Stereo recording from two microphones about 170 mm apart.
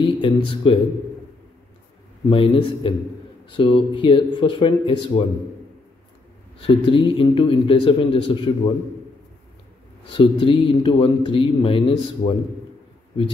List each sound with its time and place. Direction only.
0.0 s speech: 30° left (ahead or behind)
2.2 s speech: 30° left (ahead or behind)
6.6 s speech: 30° left (ahead or behind)
10.1 s speech: 30° left (ahead or behind)